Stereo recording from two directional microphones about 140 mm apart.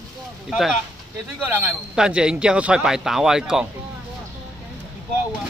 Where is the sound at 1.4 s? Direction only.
5° right (ahead or behind).